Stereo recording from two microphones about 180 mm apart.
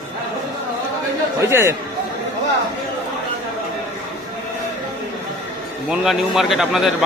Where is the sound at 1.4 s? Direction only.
15° right (ahead or behind).